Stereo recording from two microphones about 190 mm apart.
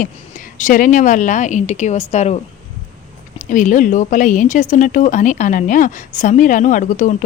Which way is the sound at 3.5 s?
45° left (ahead or behind).